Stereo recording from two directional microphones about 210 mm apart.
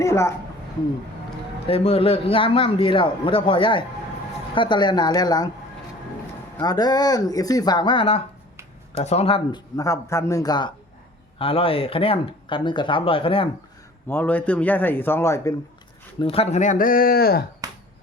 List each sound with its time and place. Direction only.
0.0 s speech: 15° left (ahead or behind)
1.6 s a man's voice: 25° left (ahead or behind)
6.6 s a man's voice: 20° left (ahead or behind)
14.1 s a man's voice: 10° left (ahead or behind)
16.1 s speech: 25° left (ahead or behind); by 17.4 s 45° left (ahead or behind)
17.6 s finger snapping: 20° right (ahead or behind)